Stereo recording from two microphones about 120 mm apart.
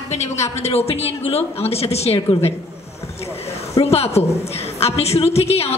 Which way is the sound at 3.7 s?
60° left (ahead or behind).